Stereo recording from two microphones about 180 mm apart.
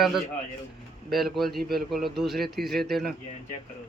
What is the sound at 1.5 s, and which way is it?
Speech, 60° right (ahead or behind).